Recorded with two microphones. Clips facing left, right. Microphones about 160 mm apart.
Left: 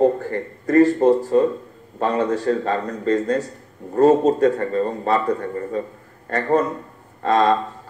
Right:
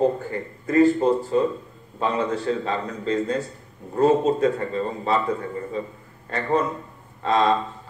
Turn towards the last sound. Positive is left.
turn(degrees=45)  # may be behind; listen again after turning